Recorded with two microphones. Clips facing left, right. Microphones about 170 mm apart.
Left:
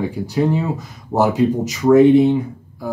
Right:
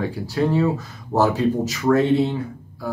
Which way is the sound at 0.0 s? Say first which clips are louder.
Left 3 dB; 15° left (ahead or behind).